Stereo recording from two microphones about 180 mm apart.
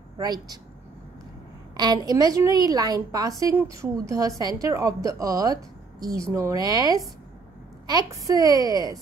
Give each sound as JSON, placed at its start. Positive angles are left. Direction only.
{"t": 0.2, "sound": "a woman's voice", "side_deg": -20}
{"t": 1.8, "sound": "a woman's voice", "side_deg": -20}